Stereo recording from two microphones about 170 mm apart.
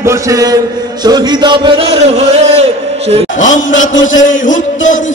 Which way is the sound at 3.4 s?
50° left (ahead or behind).